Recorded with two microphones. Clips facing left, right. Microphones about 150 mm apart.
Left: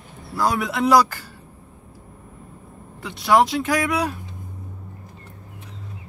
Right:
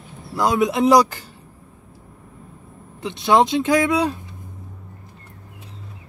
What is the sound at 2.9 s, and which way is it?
Speech, 20° right (ahead or behind).